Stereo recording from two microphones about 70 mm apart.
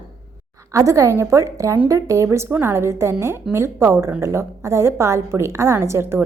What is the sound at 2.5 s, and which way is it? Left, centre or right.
A woman's voice, right.